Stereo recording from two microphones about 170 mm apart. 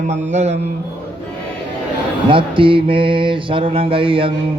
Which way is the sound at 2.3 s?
30° right (ahead or behind).